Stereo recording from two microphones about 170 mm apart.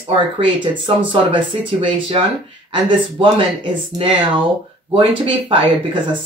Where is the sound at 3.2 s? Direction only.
30° right (ahead or behind).